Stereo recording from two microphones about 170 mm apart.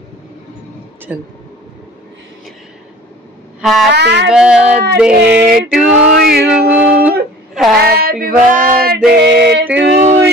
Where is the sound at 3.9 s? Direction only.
90° right.